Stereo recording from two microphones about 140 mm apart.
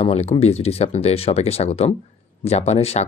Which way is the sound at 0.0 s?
50° left (ahead or behind).